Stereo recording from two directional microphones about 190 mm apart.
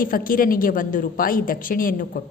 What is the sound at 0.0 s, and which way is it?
A woman's voice, 50° left (ahead or behind).